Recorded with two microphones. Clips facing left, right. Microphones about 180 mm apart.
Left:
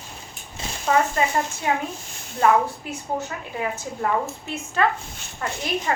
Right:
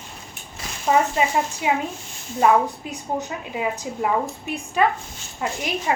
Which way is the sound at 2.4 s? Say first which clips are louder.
Right 1 dB; 15° right (ahead or behind).